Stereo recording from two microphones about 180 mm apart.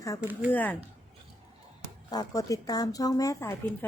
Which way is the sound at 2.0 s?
20° left (ahead or behind).